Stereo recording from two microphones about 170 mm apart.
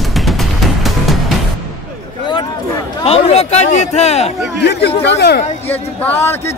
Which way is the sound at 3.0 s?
35° left (ahead or behind).